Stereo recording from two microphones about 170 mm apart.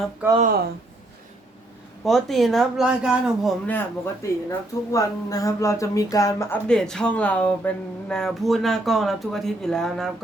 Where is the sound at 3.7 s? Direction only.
15° left (ahead or behind).